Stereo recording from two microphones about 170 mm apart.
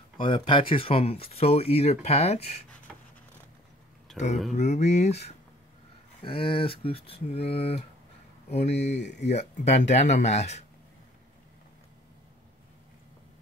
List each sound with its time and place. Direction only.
0.2 s speech: 30° left (ahead or behind)
4.6 s speech: 40° left (ahead or behind)
6.2 s speech: 35° left (ahead or behind)
8.9 s speech: 90° left
9.3 s speech: 40° left (ahead or behind)